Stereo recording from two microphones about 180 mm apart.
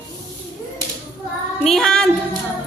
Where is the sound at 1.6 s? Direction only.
Centre (ahead or behind).